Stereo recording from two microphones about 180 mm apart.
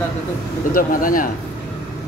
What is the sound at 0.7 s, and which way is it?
Speech, 50° left (ahead or behind).